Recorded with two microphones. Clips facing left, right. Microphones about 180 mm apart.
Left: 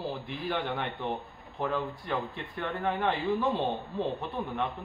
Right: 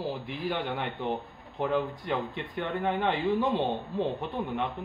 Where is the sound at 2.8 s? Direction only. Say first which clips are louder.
Right 1 dB; 20° right (ahead or behind).